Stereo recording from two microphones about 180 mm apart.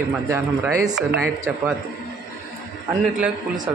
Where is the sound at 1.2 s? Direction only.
5° right (ahead or behind).